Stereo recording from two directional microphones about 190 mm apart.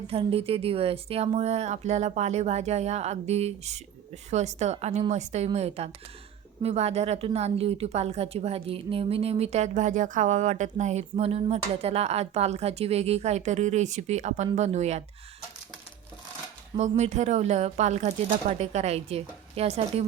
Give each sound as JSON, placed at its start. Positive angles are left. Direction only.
{"t": 0.1, "sound": "a woman's voice", "side_deg": -30}
{"t": 17.0, "sound": "a woman's voice", "side_deg": -35}